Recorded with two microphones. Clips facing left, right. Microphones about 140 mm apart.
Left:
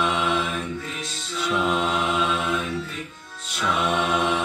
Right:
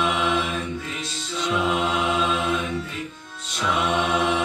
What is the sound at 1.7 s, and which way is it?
Mantra, 15° right (ahead or behind).